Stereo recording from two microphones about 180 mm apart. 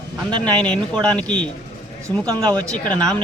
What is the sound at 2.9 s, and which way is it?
Speech, 5° left (ahead or behind).